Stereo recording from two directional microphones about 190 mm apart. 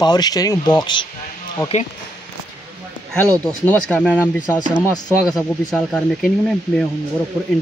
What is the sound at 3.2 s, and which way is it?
Speech, 10° left (ahead or behind).